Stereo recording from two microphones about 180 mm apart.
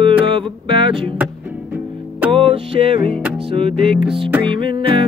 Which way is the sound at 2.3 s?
30° right (ahead or behind).